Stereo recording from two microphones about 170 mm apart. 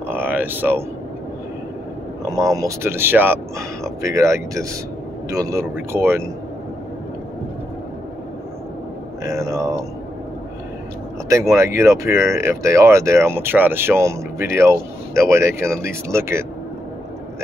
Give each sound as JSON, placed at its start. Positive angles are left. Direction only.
{"t": 0.1, "sound": "a sound", "side_deg": -10}
{"t": 2.2, "sound": "speech", "side_deg": -20}
{"t": 9.2, "sound": "speech", "side_deg": -15}
{"t": 11.2, "sound": "speech", "side_deg": -20}